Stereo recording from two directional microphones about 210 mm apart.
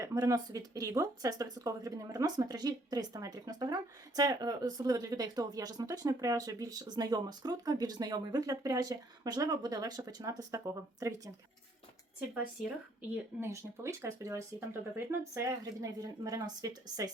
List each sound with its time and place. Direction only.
0.0 s speech: 15° right (ahead or behind)
13.4 s speech: 15° right (ahead or behind)